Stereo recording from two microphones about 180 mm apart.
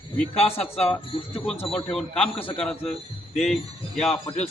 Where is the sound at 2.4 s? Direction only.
30° left (ahead or behind).